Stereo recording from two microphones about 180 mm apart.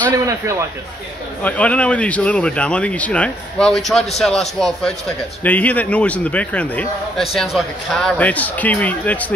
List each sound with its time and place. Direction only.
0.2 s a man's voice: 15° right (ahead or behind)
1.4 s a man's voice: 5° left (ahead or behind)